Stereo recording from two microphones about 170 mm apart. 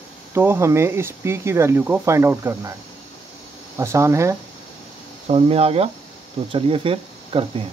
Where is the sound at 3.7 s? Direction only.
15° right (ahead or behind).